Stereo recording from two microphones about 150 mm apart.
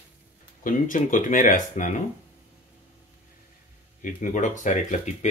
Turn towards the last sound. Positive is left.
turn(degrees=55)  # may be behind; listen again after turning